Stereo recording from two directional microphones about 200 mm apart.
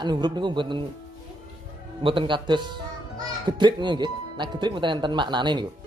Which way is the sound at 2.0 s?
25° right (ahead or behind).